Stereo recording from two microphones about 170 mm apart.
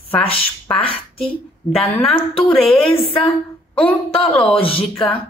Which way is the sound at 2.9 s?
30° left (ahead or behind).